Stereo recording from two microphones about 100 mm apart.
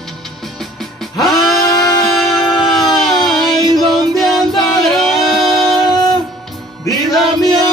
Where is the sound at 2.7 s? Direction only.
Centre (ahead or behind).